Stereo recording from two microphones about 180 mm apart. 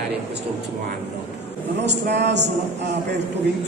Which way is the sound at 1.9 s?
75° right (ahead or behind).